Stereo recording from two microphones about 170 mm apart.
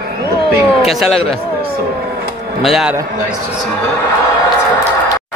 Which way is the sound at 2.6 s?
Centre (ahead or behind).